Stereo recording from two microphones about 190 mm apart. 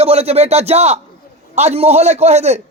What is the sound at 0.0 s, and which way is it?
A man's voice, 30° right (ahead or behind).